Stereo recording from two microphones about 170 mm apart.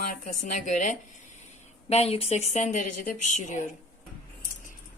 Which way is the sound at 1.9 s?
35° left (ahead or behind).